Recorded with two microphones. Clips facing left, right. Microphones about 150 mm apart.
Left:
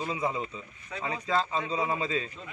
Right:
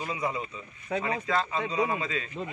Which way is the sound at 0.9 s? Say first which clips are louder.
Right 8 dB; 55° right (ahead or behind).